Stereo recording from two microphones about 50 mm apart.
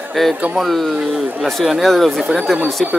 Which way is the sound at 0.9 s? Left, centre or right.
Centre.